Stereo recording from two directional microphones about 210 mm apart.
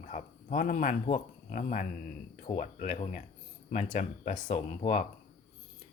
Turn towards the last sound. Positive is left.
turn(degrees=35)  # may be behind; listen again after turning